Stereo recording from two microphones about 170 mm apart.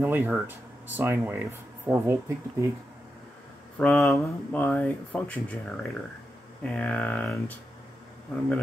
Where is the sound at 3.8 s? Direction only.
Centre (ahead or behind).